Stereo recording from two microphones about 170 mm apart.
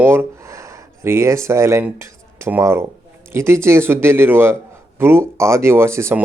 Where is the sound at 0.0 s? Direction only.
10° right (ahead or behind).